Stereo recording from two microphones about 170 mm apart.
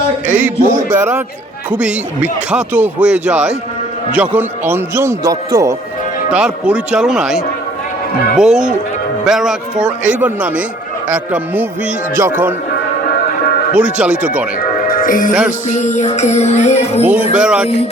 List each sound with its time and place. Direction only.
0.3 s speech: 10° right (ahead or behind)
6.3 s speech: 5° right (ahead or behind)
13.7 s speech: 10° right (ahead or behind)
14.8 s music: 55° left (ahead or behind)
15.3 s speech: 5° right (ahead or behind)
15.7 s music: 45° left (ahead or behind)
17.3 s speech: 5° right (ahead or behind)